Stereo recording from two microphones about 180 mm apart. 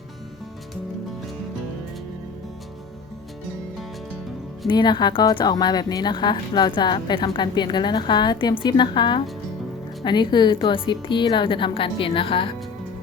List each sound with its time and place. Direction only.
4.7 s a woman's voice: 25° left (ahead or behind)